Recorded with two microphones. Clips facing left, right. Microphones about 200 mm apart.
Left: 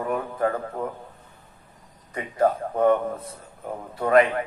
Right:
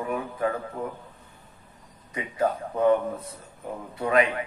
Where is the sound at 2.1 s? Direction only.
45° left (ahead or behind).